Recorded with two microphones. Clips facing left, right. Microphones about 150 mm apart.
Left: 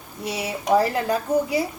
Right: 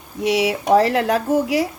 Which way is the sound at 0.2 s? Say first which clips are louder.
Right 10 dB; 90° right.